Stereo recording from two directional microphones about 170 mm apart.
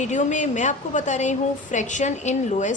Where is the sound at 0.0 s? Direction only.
45° left (ahead or behind).